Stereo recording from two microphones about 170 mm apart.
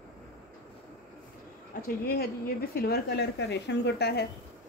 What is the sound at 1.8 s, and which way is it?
Speech, 60° left (ahead or behind).